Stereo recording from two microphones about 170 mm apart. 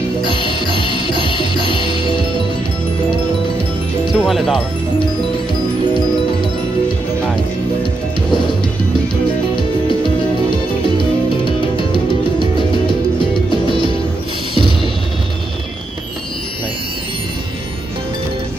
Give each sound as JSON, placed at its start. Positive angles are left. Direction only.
{"t": 0.4, "sound": "music", "side_deg": 30}
{"t": 4.1, "sound": "speech", "side_deg": 0}
{"t": 11.7, "sound": "music", "side_deg": 30}
{"t": 14.5, "sound": "music", "side_deg": -30}